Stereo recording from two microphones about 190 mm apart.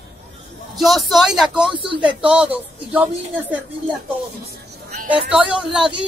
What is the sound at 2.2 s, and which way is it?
A woman's voice, 5° right (ahead or behind).